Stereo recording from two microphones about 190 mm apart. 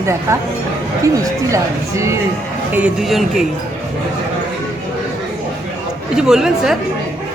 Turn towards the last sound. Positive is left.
turn(degrees=0)  # may be behind; listen again after turning